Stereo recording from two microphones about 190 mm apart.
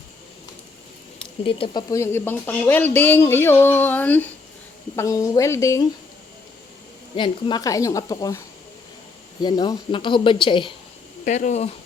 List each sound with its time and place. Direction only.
1.5 s speech: 25° left (ahead or behind)
1.9 s speech: 15° left (ahead or behind)
7.2 s speech: 25° left (ahead or behind)
9.4 s speech: 20° left (ahead or behind)
11.3 s speech: 40° left (ahead or behind)